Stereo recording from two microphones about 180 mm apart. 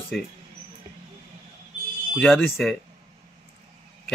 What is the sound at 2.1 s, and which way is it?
Speech, centre (ahead or behind).